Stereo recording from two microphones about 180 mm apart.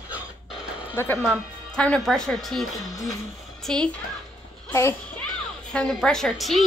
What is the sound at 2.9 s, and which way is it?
Speech, 20° left (ahead or behind).